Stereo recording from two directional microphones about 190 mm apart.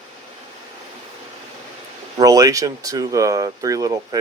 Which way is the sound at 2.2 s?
20° right (ahead or behind).